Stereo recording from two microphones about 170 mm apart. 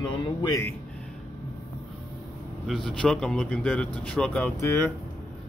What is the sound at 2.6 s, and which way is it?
Speech, centre (ahead or behind).